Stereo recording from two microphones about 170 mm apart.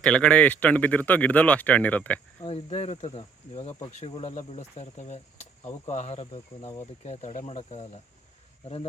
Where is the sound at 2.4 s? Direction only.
35° left (ahead or behind).